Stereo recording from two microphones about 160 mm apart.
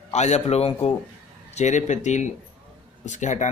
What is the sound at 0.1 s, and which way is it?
A man's voice, 45° left (ahead or behind).